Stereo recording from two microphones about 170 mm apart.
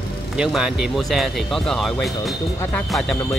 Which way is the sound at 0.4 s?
5° right (ahead or behind).